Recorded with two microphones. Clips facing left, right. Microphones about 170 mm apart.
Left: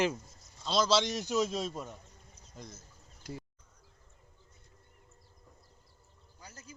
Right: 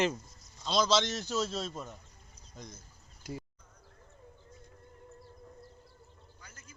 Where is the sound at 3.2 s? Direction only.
10° right (ahead or behind).